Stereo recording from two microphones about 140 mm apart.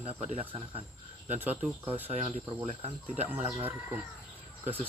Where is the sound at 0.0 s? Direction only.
50° right (ahead or behind).